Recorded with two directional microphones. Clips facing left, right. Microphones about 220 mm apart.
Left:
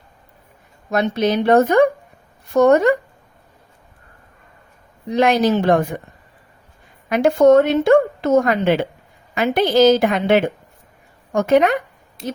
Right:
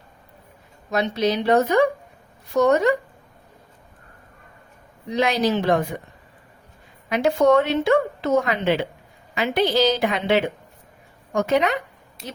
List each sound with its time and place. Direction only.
0.9 s a woman's voice: 50° left (ahead or behind)
5.1 s a woman's voice: 50° left (ahead or behind)
7.1 s a woman's voice: 50° left (ahead or behind)